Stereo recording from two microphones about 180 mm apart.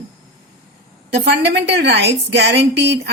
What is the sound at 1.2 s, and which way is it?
A woman's voice, 70° right (ahead or behind).